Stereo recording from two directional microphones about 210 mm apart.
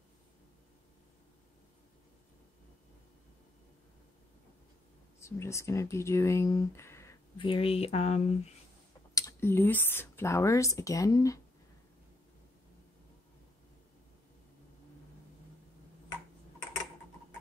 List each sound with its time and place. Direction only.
5.2 s speech: 15° left (ahead or behind)
7.3 s speech: 25° left (ahead or behind)
9.1 s speech: 15° left (ahead or behind)